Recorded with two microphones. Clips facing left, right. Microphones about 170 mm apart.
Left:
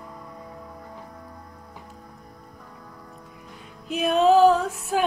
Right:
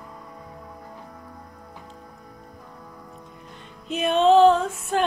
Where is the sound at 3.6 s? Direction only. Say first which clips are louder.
Even; centre (ahead or behind).